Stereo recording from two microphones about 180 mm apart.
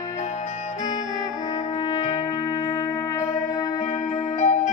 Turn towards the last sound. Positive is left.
turn(degrees=40)  # may be behind; listen again after turning